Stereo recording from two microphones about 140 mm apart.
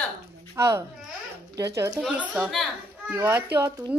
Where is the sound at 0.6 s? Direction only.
20° right (ahead or behind).